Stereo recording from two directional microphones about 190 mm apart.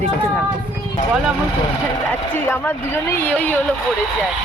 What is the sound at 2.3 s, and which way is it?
A woman's voice, 10° left (ahead or behind).